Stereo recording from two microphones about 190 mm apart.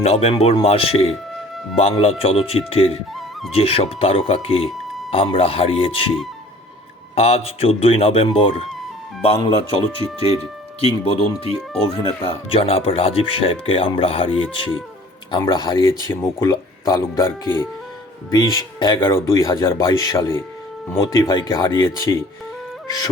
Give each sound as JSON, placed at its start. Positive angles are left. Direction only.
{"t": 0.0, "sound": "speech", "side_deg": 35}
{"t": 7.2, "sound": "speech", "side_deg": 35}